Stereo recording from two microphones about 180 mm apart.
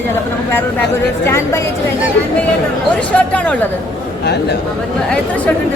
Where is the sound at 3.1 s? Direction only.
5° left (ahead or behind).